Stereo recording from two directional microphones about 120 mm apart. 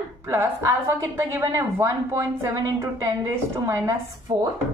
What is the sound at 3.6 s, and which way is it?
Speech, 20° right (ahead or behind).